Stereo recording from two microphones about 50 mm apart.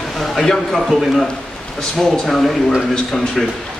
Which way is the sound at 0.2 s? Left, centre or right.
Centre.